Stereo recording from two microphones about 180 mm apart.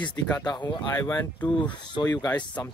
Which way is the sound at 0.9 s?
15° left (ahead or behind).